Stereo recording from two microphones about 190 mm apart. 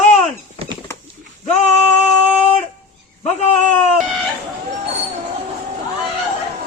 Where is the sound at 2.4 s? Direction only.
35° left (ahead or behind).